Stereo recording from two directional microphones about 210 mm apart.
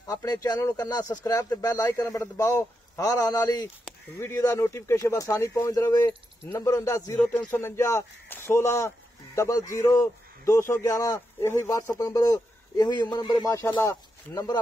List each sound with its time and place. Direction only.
0.0 s speech: 15° left (ahead or behind)